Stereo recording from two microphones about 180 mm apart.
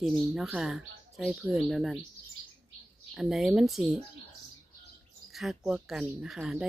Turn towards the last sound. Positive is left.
turn(degrees=0)  # may be behind; listen again after turning